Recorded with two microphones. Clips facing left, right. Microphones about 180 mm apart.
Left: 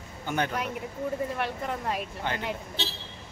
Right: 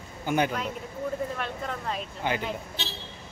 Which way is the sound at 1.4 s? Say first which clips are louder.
Left 2 dB; 10° left (ahead or behind).